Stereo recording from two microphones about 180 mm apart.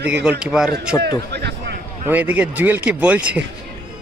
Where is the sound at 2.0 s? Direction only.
10° right (ahead or behind).